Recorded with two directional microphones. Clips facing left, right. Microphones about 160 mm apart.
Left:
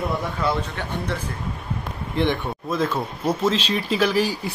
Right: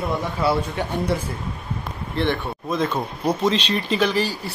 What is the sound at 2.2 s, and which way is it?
Speech, 15° left (ahead or behind).